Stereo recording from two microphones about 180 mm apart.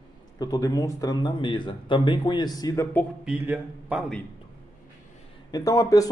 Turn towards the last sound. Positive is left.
turn(degrees=20)  # may be behind; listen again after turning